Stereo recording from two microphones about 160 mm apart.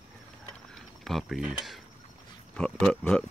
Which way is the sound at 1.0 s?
Centre (ahead or behind).